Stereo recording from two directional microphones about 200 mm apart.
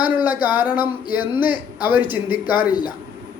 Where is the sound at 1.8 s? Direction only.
10° right (ahead or behind).